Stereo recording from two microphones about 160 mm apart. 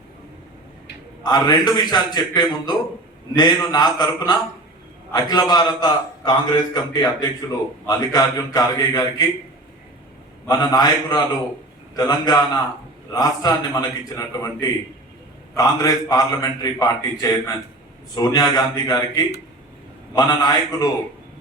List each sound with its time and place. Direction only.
1.2 s a man's voice: 25° left (ahead or behind)
10.4 s a man's voice: 25° left (ahead or behind)